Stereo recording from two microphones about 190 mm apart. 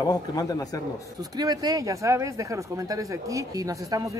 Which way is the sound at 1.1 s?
20° right (ahead or behind).